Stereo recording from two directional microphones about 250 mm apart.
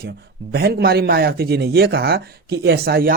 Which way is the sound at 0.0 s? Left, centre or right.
Right.